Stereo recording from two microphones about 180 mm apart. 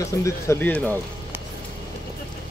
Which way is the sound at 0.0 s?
15° left (ahead or behind).